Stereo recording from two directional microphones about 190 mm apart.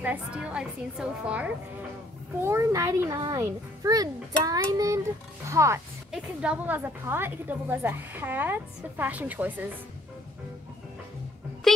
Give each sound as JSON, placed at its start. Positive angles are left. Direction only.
{"t": 0.0, "sound": "a woman's voice", "side_deg": -5}
{"t": 6.1, "sound": "a woman's voice", "side_deg": -5}
{"t": 11.7, "sound": "speech", "side_deg": 0}